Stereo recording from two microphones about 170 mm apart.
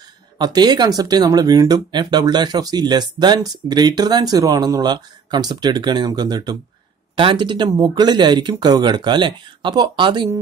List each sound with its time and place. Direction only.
0.4 s speech: 25° right (ahead or behind)